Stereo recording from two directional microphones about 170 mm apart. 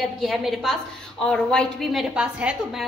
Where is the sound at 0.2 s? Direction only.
Centre (ahead or behind).